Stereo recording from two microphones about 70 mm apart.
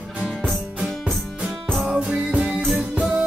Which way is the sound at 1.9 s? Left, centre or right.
Centre.